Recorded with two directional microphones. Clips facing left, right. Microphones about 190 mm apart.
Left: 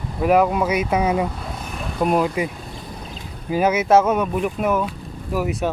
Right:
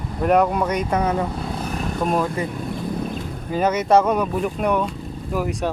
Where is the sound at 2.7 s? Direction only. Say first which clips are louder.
Right 9 dB; 55° right (ahead or behind).